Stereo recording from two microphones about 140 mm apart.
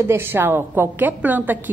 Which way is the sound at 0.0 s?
15° right (ahead or behind).